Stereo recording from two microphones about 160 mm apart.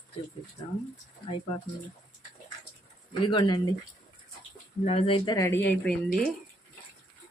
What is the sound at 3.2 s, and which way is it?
Speech, 30° left (ahead or behind).